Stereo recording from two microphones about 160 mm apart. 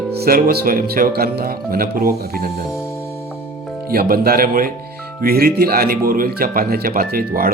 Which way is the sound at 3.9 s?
70° right (ahead or behind).